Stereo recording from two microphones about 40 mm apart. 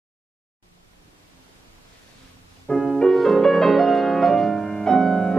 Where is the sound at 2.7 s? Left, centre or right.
Left.